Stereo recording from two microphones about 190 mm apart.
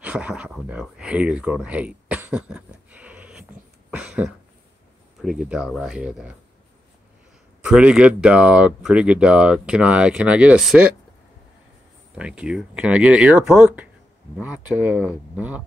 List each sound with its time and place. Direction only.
0.0 s speech: 5° right (ahead or behind)
3.9 s a sound: 5° right (ahead or behind)
5.2 s speech: 5° right (ahead or behind)
7.6 s speech: 5° right (ahead or behind)
12.2 s speech: 5° right (ahead or behind)